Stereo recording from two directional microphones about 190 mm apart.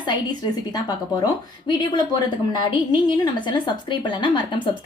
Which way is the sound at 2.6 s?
25° left (ahead or behind).